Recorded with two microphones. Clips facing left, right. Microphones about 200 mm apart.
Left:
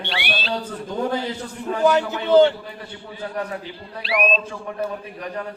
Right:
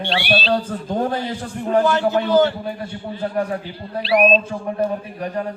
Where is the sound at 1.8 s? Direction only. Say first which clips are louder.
Right 1 dB; 20° left (ahead or behind).